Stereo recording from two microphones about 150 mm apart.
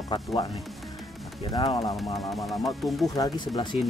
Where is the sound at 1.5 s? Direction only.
25° left (ahead or behind).